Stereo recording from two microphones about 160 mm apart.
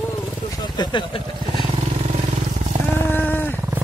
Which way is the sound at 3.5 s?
15° right (ahead or behind).